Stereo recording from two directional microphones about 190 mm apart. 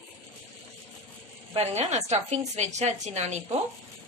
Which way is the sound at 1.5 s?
35° right (ahead or behind).